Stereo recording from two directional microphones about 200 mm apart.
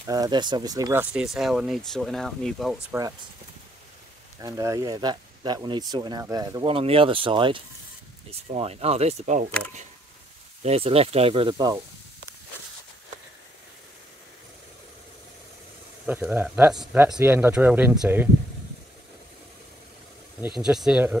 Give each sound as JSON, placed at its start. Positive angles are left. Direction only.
{"t": 0.0, "sound": "speech", "side_deg": -20}
{"t": 1.1, "sound": "speech", "side_deg": 0}
{"t": 2.9, "sound": "speech", "side_deg": -15}
{"t": 4.4, "sound": "speech", "side_deg": -15}
{"t": 10.6, "sound": "speech", "side_deg": -30}
{"t": 16.1, "sound": "speech", "side_deg": -10}
{"t": 20.5, "sound": "speech", "side_deg": -5}